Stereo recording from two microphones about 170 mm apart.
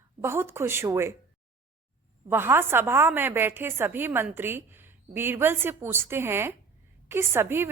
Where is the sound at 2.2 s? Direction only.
15° right (ahead or behind).